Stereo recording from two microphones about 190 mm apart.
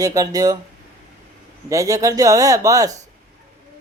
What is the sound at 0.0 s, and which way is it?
Speech, 20° right (ahead or behind).